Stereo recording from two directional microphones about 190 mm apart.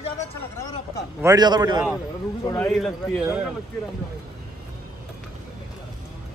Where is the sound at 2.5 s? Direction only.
5° left (ahead or behind).